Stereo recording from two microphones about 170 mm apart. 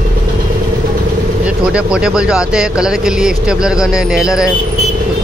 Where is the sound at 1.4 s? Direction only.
5° right (ahead or behind).